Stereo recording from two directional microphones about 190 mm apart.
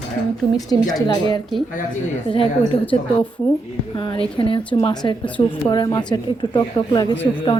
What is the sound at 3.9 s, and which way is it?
A woman's voice, 25° left (ahead or behind).